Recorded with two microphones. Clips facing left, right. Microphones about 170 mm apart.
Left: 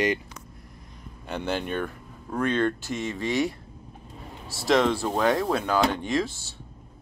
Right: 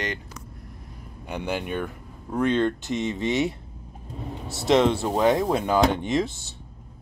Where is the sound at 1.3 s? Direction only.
10° right (ahead or behind).